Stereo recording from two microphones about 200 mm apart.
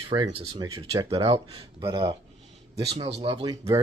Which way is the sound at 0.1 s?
20° right (ahead or behind).